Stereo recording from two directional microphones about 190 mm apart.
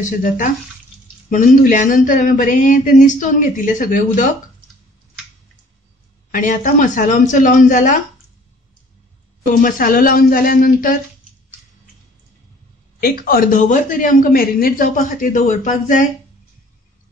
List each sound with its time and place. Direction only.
0.0 s a man's voice: 45° left (ahead or behind)
6.3 s a man's voice: 45° left (ahead or behind)
9.5 s a man's voice: 45° left (ahead or behind)
13.0 s a man's voice: 50° left (ahead or behind)